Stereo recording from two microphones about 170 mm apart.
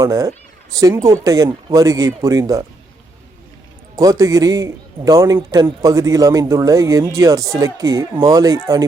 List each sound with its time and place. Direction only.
0.0 s a man's voice: 20° right (ahead or behind)
3.9 s a man's voice: 20° right (ahead or behind)